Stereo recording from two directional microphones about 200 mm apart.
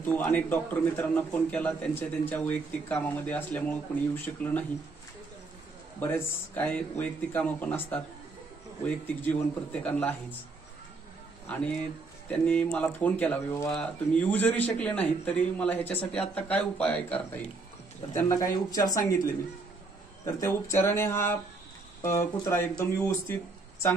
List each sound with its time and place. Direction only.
0.0 s a man's voice: 10° left (ahead or behind)
5.9 s a man's voice: 10° left (ahead or behind)
11.4 s a man's voice: 5° left (ahead or behind)
20.2 s a man's voice: 15° left (ahead or behind)